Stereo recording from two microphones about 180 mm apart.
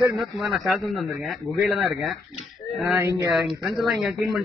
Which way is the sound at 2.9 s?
15° right (ahead or behind).